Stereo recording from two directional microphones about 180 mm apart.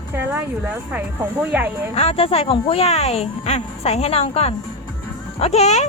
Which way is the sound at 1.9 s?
35° left (ahead or behind).